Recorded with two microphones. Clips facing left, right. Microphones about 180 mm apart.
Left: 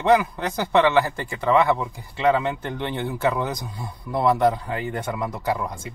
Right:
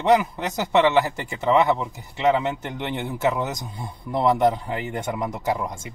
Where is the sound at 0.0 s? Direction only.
15° right (ahead or behind).